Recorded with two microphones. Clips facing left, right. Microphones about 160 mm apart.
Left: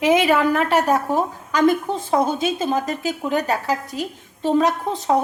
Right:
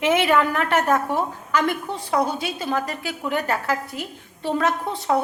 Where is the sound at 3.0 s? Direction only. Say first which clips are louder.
Left 4 dB; 40° left (ahead or behind).